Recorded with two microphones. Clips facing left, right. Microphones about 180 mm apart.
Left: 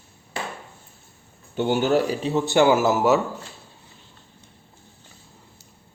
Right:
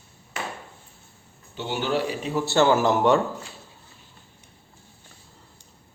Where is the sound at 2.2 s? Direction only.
20° left (ahead or behind).